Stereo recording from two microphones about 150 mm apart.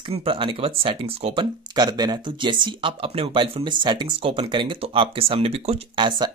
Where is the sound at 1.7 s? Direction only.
25° right (ahead or behind).